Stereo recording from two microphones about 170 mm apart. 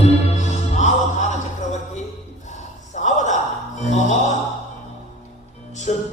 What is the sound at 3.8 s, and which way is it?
Mantra, 45° left (ahead or behind).